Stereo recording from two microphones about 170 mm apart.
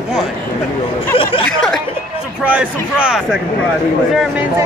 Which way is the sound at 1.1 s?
30° left (ahead or behind).